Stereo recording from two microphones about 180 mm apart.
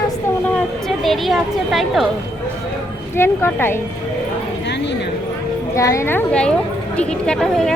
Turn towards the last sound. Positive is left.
turn(degrees=0)  # may be behind; listen again after turning